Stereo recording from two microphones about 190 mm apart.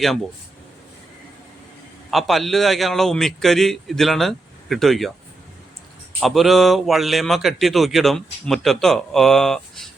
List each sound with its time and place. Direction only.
0.0 s a man's voice: centre (ahead or behind)
2.0 s a man's voice: centre (ahead or behind)
6.1 s a man's voice: centre (ahead or behind)